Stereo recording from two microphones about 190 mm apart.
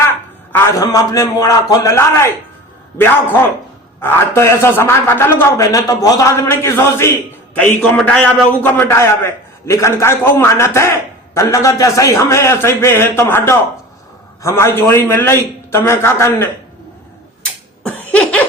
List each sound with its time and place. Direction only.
0.5 s a man's voice: 15° left (ahead or behind)
17.8 s cough: 5° left (ahead or behind)